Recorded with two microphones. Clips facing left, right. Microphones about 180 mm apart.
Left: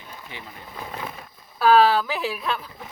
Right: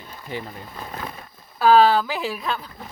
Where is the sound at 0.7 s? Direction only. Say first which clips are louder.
Left 2 dB; 5° left (ahead or behind).